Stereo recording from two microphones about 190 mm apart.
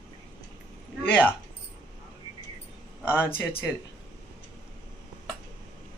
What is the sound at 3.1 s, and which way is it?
Speech, 10° left (ahead or behind).